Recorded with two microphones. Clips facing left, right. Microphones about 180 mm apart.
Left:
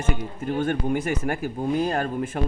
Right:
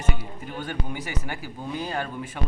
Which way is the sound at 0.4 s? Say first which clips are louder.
Left 10 dB; 50° left (ahead or behind).